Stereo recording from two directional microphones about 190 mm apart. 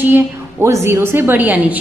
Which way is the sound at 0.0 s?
10° right (ahead or behind).